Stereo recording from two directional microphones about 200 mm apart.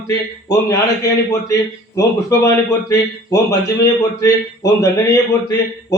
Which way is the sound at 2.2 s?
15° left (ahead or behind).